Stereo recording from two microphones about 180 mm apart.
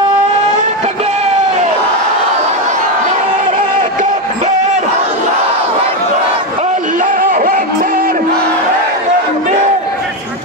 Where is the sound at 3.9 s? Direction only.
40° right (ahead or behind).